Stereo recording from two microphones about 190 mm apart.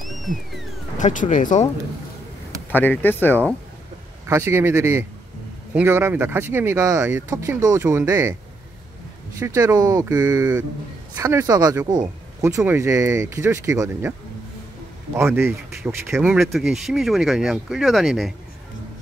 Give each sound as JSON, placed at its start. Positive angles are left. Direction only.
{"t": 0.0, "sound": "music", "side_deg": 0}
{"t": 0.9, "sound": "speech", "side_deg": 40}
{"t": 2.7, "sound": "speech", "side_deg": 10}
{"t": 4.3, "sound": "speech", "side_deg": -10}
{"t": 9.4, "sound": "speech", "side_deg": -15}
{"t": 15.1, "sound": "speech", "side_deg": -15}